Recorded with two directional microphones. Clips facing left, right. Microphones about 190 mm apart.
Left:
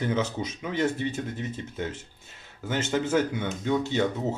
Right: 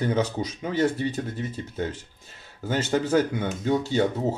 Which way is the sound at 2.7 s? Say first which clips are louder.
Right 3 dB; 35° right (ahead or behind).